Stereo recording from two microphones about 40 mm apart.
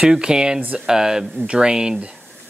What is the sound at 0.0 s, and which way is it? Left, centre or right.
Speech, right.